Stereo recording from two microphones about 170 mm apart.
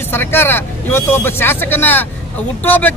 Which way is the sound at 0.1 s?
15° left (ahead or behind).